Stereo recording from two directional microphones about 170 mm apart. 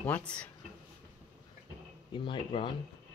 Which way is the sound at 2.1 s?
30° left (ahead or behind).